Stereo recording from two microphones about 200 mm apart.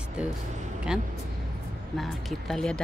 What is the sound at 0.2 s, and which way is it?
Speech, 5° right (ahead or behind).